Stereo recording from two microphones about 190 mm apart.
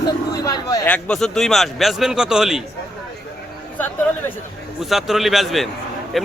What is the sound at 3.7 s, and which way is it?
Speech, 10° left (ahead or behind).